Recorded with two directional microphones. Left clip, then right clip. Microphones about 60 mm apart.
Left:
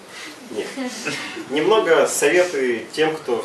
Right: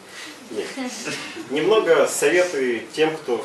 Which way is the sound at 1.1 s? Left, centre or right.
Left.